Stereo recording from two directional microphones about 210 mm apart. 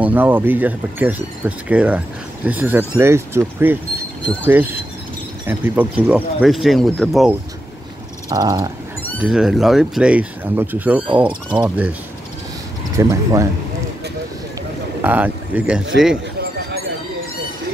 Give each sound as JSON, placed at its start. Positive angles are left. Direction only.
{"t": 0.0, "sound": "speech", "side_deg": -10}
{"t": 8.3, "sound": "speech", "side_deg": -15}
{"t": 9.2, "sound": "speech", "side_deg": -5}
{"t": 12.9, "sound": "speech", "side_deg": -15}
{"t": 15.0, "sound": "speech", "side_deg": -10}